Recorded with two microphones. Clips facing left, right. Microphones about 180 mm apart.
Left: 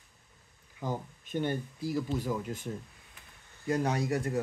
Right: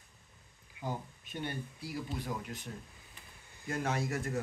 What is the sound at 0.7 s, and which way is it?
Speech, 45° left (ahead or behind).